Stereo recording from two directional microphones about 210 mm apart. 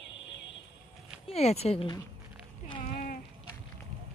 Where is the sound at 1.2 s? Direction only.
30° left (ahead or behind).